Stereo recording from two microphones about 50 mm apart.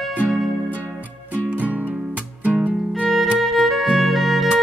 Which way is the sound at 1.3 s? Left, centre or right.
Right.